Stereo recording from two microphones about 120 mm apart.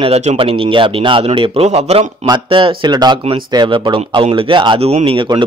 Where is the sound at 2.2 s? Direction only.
40° right (ahead or behind).